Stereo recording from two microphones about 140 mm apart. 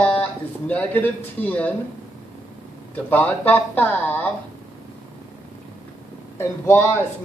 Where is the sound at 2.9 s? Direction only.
10° left (ahead or behind).